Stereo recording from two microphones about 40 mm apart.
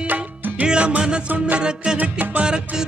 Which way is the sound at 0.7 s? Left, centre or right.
Right.